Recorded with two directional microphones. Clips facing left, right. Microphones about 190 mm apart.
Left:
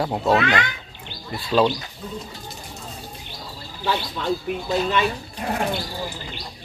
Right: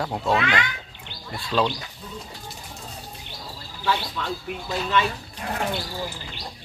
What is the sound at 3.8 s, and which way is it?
Speech, 25° left (ahead or behind).